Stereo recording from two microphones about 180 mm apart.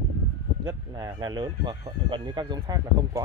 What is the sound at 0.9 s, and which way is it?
Speech, 25° right (ahead or behind).